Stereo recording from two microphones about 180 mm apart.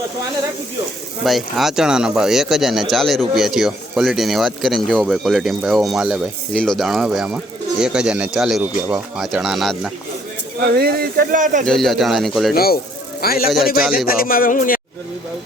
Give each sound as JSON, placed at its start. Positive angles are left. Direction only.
{"t": 1.2, "sound": "speech", "side_deg": 0}
{"t": 10.6, "sound": "speech", "side_deg": -60}
{"t": 11.6, "sound": "speech", "side_deg": 0}
{"t": 12.5, "sound": "speech", "side_deg": 55}